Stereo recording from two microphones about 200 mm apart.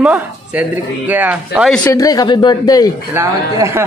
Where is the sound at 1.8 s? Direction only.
15° left (ahead or behind).